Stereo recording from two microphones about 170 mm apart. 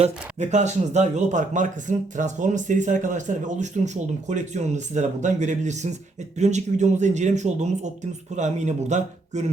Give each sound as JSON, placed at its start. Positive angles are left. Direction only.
{"t": 0.0, "sound": "speech", "side_deg": -45}